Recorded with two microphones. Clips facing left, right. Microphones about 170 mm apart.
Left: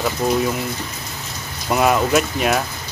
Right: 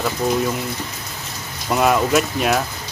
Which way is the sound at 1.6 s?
Centre (ahead or behind).